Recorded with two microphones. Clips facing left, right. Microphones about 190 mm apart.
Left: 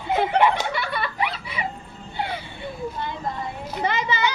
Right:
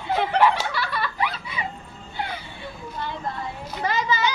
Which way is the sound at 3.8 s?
20° left (ahead or behind).